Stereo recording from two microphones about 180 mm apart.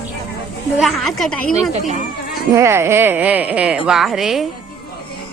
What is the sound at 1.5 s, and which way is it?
Speech, 35° right (ahead or behind).